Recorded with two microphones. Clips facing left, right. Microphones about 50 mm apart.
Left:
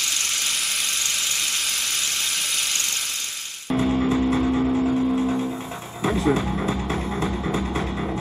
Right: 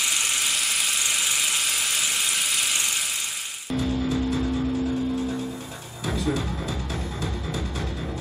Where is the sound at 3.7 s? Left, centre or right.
Left.